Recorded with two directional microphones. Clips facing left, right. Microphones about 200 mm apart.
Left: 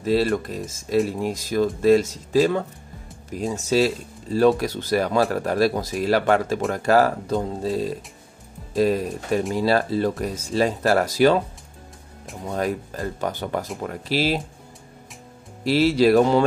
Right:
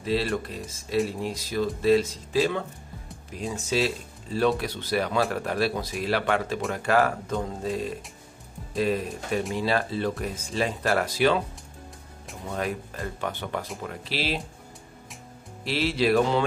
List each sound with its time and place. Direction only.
0.0 s speech: 45° left (ahead or behind)
12.5 s speech: 40° left (ahead or behind)
15.6 s speech: 40° left (ahead or behind)